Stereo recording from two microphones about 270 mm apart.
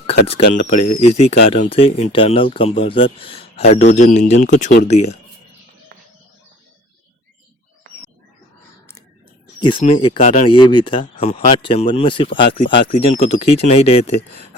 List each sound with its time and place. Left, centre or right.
0.5 s speech: left
9.6 s speech: centre